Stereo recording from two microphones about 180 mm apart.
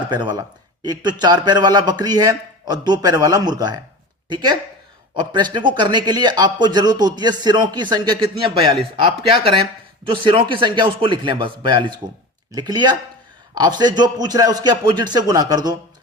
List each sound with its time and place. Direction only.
0.1 s a man's voice: 25° right (ahead or behind)